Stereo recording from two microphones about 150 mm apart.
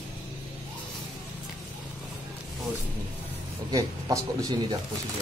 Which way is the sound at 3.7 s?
25° right (ahead or behind).